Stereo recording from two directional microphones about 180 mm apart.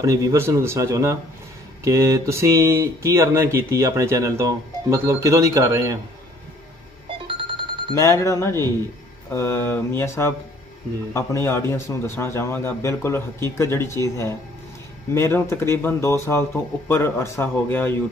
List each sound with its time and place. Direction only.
0.0 s speech: 15° right (ahead or behind)
7.1 s music: 30° right (ahead or behind)
7.9 s a man's voice: 15° left (ahead or behind)